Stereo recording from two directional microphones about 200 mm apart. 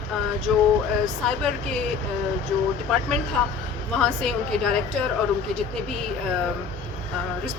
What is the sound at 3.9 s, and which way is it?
Speech, 5° left (ahead or behind).